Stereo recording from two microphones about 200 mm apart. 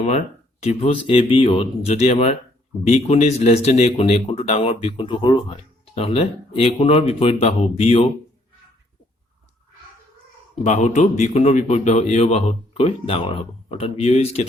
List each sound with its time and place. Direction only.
0.6 s speech: 30° left (ahead or behind)
10.6 s speech: 35° left (ahead or behind)